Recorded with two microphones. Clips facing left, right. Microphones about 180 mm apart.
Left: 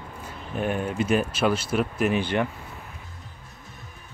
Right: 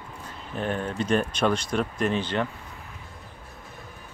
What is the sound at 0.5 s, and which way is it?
Speech, 10° left (ahead or behind).